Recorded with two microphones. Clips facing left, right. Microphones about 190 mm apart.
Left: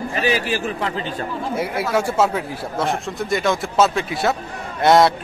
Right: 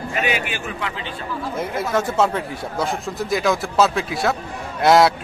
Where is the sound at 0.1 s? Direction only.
35° left (ahead or behind).